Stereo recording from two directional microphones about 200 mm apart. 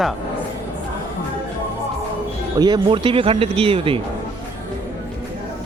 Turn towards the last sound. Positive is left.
turn(degrees=-25)  # may be behind; listen again after turning